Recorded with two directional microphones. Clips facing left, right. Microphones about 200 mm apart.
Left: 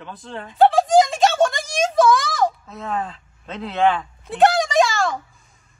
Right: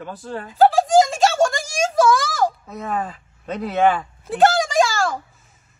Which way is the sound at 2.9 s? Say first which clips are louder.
Right 1 dB; 10° right (ahead or behind).